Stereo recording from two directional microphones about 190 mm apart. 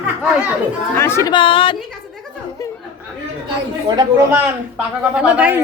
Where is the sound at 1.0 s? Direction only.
15° left (ahead or behind).